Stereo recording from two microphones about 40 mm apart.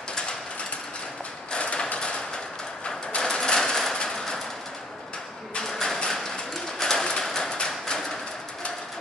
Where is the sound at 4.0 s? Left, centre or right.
Centre.